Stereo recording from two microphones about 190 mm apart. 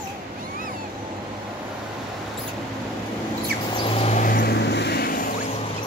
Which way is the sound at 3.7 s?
30° left (ahead or behind).